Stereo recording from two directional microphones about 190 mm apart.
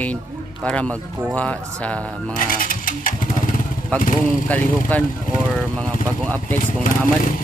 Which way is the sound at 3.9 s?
10° left (ahead or behind).